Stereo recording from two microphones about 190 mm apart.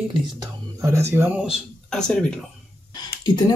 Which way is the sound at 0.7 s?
15° right (ahead or behind).